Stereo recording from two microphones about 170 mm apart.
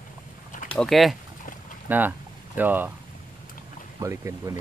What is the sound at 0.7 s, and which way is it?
Speech, centre (ahead or behind).